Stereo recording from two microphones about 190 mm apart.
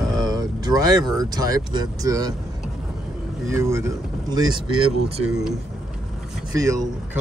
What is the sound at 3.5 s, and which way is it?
Speech, 15° right (ahead or behind).